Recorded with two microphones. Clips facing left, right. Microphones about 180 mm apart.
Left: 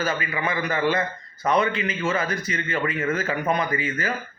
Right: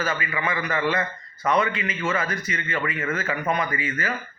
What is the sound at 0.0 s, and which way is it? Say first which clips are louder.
Speech: left 1 dB; 35° left (ahead or behind).